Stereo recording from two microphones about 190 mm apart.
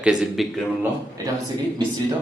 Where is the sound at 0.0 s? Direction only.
Centre (ahead or behind).